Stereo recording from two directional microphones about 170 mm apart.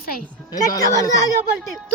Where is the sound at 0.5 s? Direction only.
20° left (ahead or behind).